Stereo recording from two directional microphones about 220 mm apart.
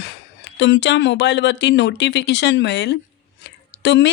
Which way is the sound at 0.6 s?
55° left (ahead or behind).